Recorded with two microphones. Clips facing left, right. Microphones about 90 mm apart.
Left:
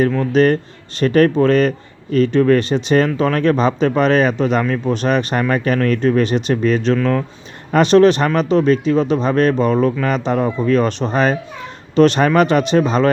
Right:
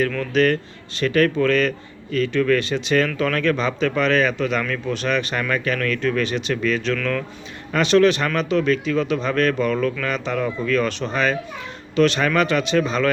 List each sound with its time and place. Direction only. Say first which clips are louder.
0.0 s speech: left 5 dB; 30° left (ahead or behind)